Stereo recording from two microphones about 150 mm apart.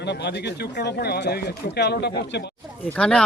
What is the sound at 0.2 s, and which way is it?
Speech, 90° left.